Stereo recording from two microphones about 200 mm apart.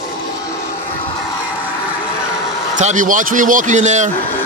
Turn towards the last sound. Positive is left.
turn(degrees=-35)  # may be behind; listen again after turning